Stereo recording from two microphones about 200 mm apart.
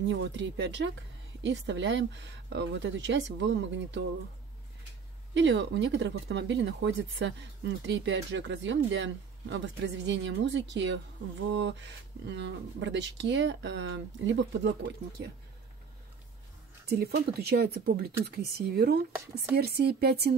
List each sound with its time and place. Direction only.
0.0 s speech: 60° right (ahead or behind)
5.3 s speech: 65° right (ahead or behind)
16.9 s speech: 50° right (ahead or behind)